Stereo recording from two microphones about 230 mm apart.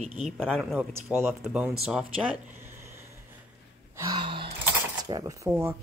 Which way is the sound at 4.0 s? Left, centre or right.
Centre.